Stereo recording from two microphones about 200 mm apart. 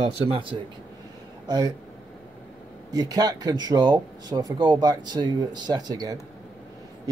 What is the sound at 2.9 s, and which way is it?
Speech, 20° right (ahead or behind).